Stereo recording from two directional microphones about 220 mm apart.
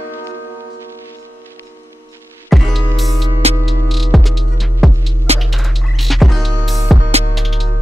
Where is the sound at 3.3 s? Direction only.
25° right (ahead or behind).